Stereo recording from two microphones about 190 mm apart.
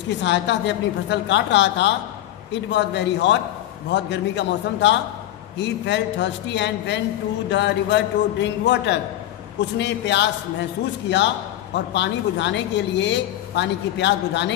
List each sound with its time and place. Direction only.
0.2 s a woman's voice: 65° left (ahead or behind)